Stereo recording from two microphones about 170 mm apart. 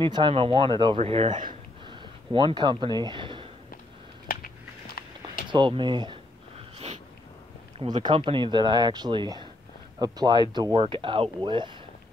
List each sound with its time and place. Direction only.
0.0 s speech: 30° right (ahead or behind)
5.0 s a sound: 65° left (ahead or behind)
5.5 s speech: 30° right (ahead or behind)
7.8 s speech: 25° right (ahead or behind)